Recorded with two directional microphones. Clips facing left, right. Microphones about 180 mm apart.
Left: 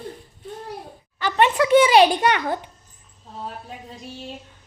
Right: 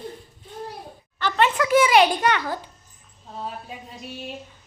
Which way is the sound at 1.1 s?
15° left (ahead or behind).